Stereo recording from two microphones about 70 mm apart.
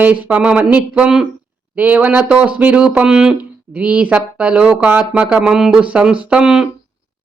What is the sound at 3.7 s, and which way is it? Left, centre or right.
Speech, centre.